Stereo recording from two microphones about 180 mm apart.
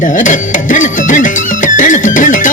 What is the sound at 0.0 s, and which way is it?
Music, 45° left (ahead or behind).